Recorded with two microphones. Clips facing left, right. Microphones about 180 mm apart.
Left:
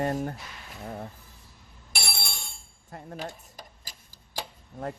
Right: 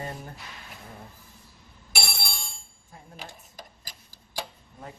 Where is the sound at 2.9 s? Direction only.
65° left (ahead or behind).